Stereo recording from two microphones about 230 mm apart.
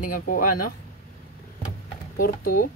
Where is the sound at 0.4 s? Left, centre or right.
Left.